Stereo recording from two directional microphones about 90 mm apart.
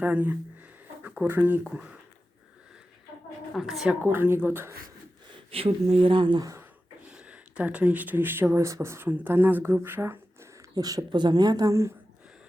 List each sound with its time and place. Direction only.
0.0 s speech: 20° right (ahead or behind)
3.5 s speech: centre (ahead or behind)
4.0 s speech: 25° right (ahead or behind)
5.3 s speech: 90° right; by 6.4 s 70° right (ahead or behind)
7.0 s speech: 10° right (ahead or behind); by 10.5 s 25° right (ahead or behind)
10.8 s speech: 40° right (ahead or behind)